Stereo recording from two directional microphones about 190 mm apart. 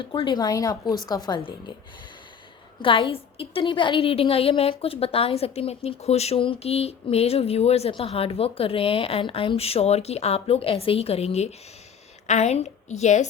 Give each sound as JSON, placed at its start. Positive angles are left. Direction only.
{"t": 0.0, "sound": "a woman's voice", "side_deg": 25}
{"t": 2.8, "sound": "a woman's voice", "side_deg": 25}